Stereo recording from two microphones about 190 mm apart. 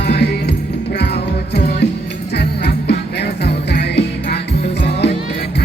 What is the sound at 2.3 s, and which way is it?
Music, 60° left (ahead or behind).